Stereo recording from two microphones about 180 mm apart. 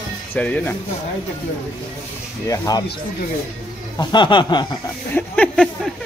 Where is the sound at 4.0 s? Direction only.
25° left (ahead or behind).